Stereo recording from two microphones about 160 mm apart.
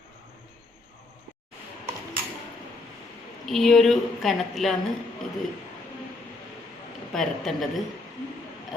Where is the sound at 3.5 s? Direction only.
Centre (ahead or behind).